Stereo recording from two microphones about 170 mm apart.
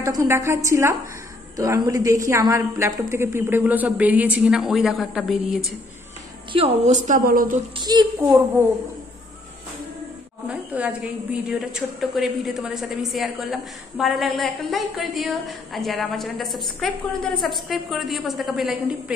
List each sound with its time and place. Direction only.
0.0 s a woman's voice: 15° right (ahead or behind); by 5.7 s centre (ahead or behind)
6.5 s a woman's voice: 35° right (ahead or behind)
7.1 s speech: 55° right (ahead or behind)
7.7 s a child's voice: 25° right (ahead or behind)
8.2 s a woman's voice: 10° right (ahead or behind)
10.5 s a woman's voice: 5° right (ahead or behind)